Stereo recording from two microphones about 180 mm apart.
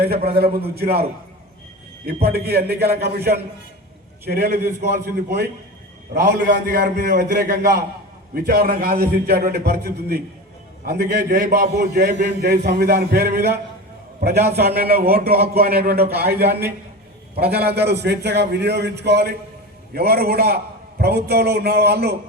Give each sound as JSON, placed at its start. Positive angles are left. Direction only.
{"t": 0.3, "sound": "a man's voice", "side_deg": -60}
{"t": 2.2, "sound": "a man's voice", "side_deg": -60}
{"t": 11.9, "sound": "a man's voice", "side_deg": -65}